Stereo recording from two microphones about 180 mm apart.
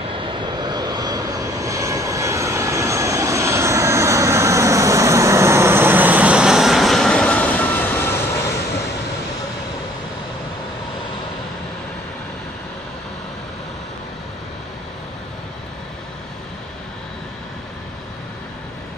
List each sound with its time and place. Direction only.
0.2 s vehicle: 25° right (ahead or behind); by 8.2 s 10° left (ahead or behind)